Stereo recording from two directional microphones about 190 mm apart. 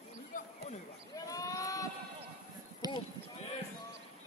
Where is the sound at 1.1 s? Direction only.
20° left (ahead or behind).